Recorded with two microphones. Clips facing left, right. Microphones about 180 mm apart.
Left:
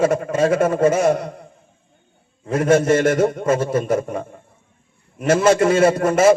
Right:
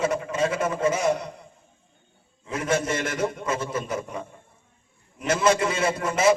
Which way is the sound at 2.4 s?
50° left (ahead or behind).